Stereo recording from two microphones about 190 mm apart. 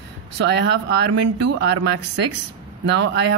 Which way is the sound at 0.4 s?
65° right (ahead or behind).